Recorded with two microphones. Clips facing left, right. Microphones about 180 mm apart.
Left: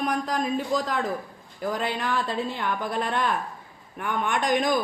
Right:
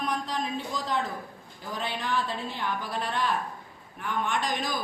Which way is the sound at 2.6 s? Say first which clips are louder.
Left 4 dB; 50° left (ahead or behind).